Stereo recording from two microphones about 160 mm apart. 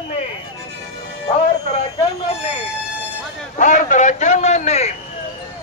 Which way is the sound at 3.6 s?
55° left (ahead or behind).